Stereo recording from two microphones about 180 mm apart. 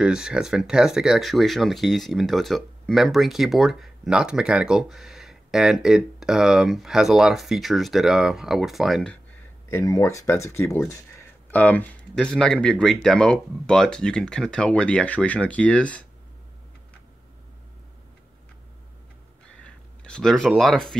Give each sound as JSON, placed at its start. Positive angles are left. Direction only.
{"t": 0.0, "sound": "speech", "side_deg": -5}
{"t": 9.7, "sound": "speech", "side_deg": 15}
{"t": 19.6, "sound": "speech", "side_deg": 5}